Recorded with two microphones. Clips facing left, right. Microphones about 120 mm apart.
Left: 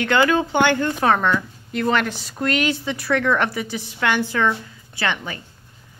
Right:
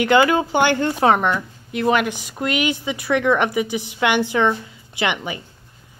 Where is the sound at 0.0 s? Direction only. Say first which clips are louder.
Right 2 dB; 15° right (ahead or behind).